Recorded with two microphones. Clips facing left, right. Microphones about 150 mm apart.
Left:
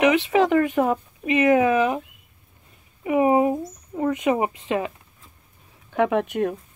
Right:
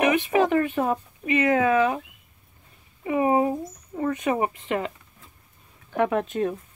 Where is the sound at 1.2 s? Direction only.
20° left (ahead or behind).